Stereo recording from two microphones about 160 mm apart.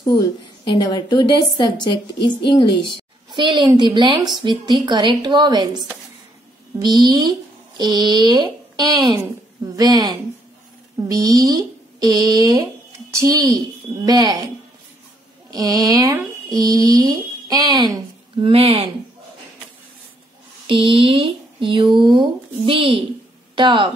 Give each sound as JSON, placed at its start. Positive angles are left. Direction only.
{"t": 0.7, "sound": "a woman's voice", "side_deg": 25}
{"t": 3.3, "sound": "a woman's voice", "side_deg": -30}
{"t": 15.5, "sound": "a woman's voice", "side_deg": -25}
{"t": 18.5, "sound": "speech", "side_deg": -40}
{"t": 20.6, "sound": "a woman's voice", "side_deg": -35}